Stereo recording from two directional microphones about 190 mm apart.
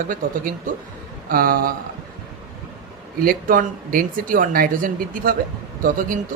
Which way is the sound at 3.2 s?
50° right (ahead or behind).